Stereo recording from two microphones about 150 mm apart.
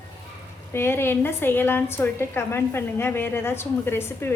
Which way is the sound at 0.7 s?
15° left (ahead or behind).